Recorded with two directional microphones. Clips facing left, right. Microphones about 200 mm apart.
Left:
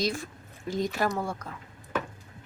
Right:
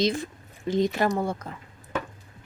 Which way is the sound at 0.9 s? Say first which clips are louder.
Right 4 dB; 20° right (ahead or behind).